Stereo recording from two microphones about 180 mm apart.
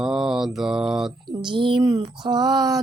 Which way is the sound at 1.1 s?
25° right (ahead or behind).